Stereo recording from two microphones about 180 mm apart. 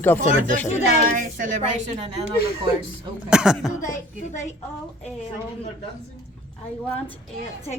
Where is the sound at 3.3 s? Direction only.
5° right (ahead or behind).